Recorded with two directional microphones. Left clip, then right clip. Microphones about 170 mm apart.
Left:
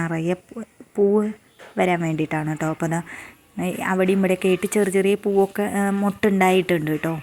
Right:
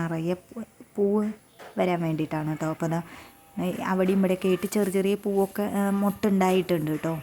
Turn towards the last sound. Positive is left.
turn(degrees=10)  # may be behind; listen again after turning